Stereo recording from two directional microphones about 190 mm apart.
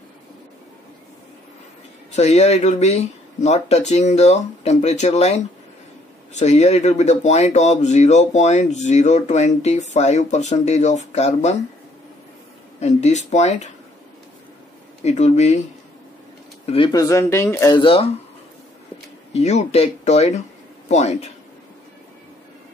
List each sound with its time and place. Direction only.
2.1 s speech: 35° left (ahead or behind)
12.8 s speech: 35° left (ahead or behind)
15.0 s speech: 35° left (ahead or behind)
16.6 s speech: 30° left (ahead or behind)
19.3 s speech: 35° left (ahead or behind)